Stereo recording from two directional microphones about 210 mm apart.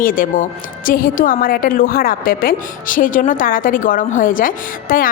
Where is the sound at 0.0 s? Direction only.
40° left (ahead or behind).